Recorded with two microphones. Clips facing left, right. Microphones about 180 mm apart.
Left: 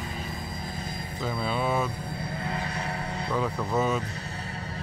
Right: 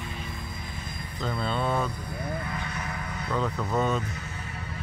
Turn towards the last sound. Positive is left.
turn(degrees=5)  # may be behind; listen again after turning